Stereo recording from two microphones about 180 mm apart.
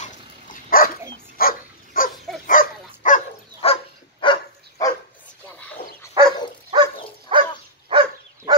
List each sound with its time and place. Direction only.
0.0 s dog: 50° left (ahead or behind)
3.6 s dog: 35° left (ahead or behind)
6.7 s dog: 25° right (ahead or behind)